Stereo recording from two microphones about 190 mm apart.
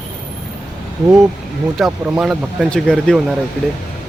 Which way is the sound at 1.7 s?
Centre (ahead or behind).